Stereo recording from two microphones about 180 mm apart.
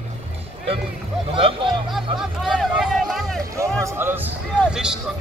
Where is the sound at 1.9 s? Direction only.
5° right (ahead or behind).